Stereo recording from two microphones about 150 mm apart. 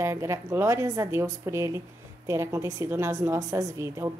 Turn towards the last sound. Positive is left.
turn(degrees=-20)  # may be behind; listen again after turning